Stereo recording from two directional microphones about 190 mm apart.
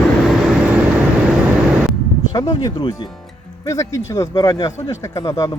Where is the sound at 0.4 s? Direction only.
5° right (ahead or behind).